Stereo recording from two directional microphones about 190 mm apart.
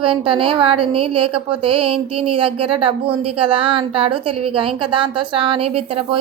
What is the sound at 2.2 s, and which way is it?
A woman's voice, 30° right (ahead or behind).